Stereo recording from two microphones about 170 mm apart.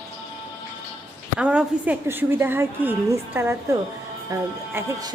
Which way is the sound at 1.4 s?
5° right (ahead or behind).